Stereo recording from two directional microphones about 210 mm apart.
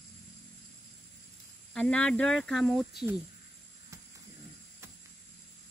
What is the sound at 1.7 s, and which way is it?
Speech, 5° left (ahead or behind).